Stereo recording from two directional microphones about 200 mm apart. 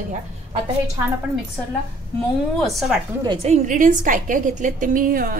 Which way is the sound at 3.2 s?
25° right (ahead or behind).